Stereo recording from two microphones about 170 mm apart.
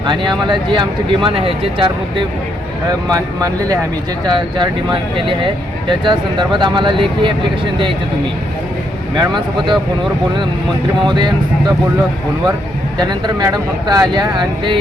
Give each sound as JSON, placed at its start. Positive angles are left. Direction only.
{"t": 0.0, "sound": "speech", "side_deg": -30}
{"t": 9.1, "sound": "speech", "side_deg": -25}
{"t": 11.0, "sound": "speech", "side_deg": -25}
{"t": 13.0, "sound": "speech", "side_deg": -25}